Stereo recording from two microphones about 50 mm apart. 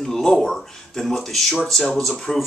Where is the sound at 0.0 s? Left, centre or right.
Centre.